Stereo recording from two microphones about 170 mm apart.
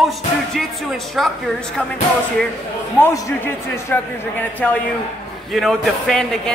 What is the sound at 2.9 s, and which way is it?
Speech, 10° left (ahead or behind).